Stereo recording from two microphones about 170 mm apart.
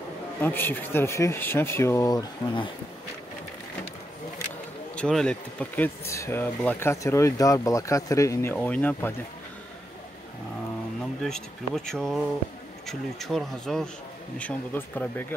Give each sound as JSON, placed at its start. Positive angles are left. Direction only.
{"t": 0.4, "sound": "speech", "side_deg": 10}
{"t": 4.9, "sound": "speech", "side_deg": 5}
{"t": 11.2, "sound": "speech", "side_deg": 5}